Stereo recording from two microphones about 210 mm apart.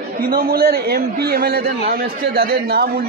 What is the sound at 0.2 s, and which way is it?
A man's voice, 45° right (ahead or behind).